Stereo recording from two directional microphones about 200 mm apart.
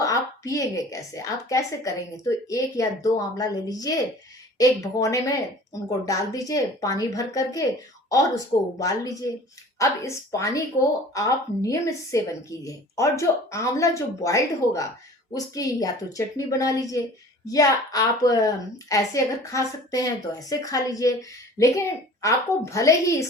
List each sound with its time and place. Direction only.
0.0 s a woman's voice: 15° left (ahead or behind)